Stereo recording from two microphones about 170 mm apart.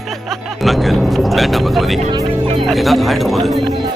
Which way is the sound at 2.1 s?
30° right (ahead or behind).